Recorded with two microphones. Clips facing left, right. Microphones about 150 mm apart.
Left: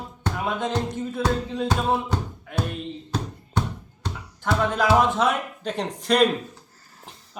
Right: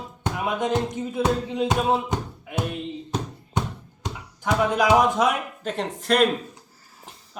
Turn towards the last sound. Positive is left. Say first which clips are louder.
# even
turn(degrees=0)  # may be behind; listen again after turning